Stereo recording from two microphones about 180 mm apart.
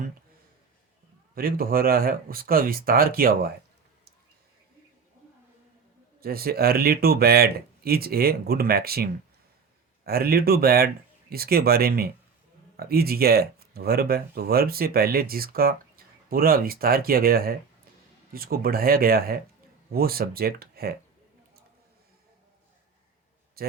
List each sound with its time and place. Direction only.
1.4 s speech: 55° right (ahead or behind)
6.1 s speech: 55° right (ahead or behind)
10.1 s speech: 60° right (ahead or behind)
23.6 s speech: 55° right (ahead or behind)